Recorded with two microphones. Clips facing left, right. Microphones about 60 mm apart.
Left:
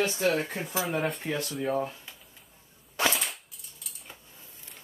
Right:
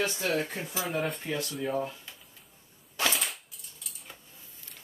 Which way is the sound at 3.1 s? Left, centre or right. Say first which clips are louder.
Even; centre.